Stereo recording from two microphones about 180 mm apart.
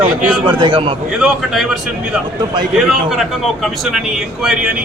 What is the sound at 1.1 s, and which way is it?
A man's voice, centre (ahead or behind).